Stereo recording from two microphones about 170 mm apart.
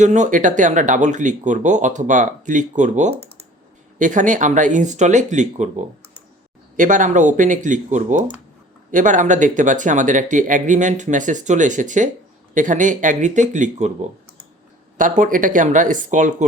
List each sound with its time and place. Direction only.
0.0 s speech: 45° right (ahead or behind)
14.9 s speech: 50° right (ahead or behind)